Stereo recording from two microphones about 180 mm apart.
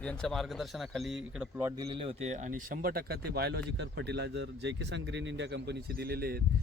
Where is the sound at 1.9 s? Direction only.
30° right (ahead or behind); by 6.4 s 60° right (ahead or behind).